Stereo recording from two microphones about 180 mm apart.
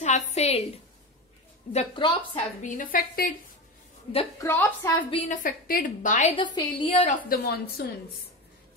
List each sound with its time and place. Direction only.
0.0 s a woman's voice: 40° left (ahead or behind)
1.7 s a woman's voice: 30° left (ahead or behind)
2.6 s a woman's voice: 50° left (ahead or behind)
4.4 s a woman's voice: 10° left (ahead or behind)
5.3 s a woman's voice: 50° left (ahead or behind)
6.3 s a woman's voice: 25° left (ahead or behind)
7.0 s a woman's voice: 45° left (ahead or behind)